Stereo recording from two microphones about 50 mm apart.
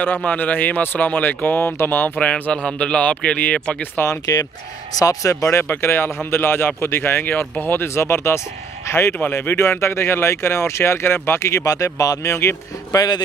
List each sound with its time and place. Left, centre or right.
0.2 s a man's voice: left
4.0 s speech: left
5.2 s a man's voice: left
9.2 s speech: left